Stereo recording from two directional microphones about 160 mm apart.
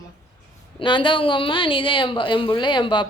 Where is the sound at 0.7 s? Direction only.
30° left (ahead or behind).